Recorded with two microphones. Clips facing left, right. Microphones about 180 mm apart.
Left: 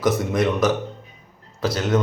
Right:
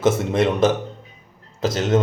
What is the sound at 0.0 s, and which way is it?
Speech, 25° right (ahead or behind).